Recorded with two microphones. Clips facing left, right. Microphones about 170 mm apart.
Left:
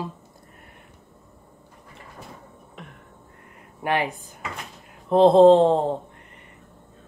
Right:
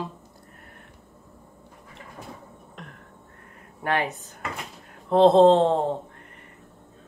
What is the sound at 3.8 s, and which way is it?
Speech, 15° left (ahead or behind).